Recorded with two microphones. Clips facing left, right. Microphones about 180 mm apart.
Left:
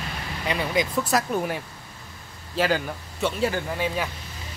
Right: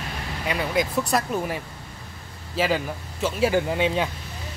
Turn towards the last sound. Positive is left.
turn(degrees=-20)  # may be behind; listen again after turning